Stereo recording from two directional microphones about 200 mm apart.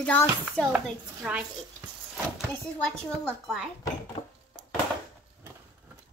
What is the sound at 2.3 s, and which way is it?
Speech, 5° left (ahead or behind).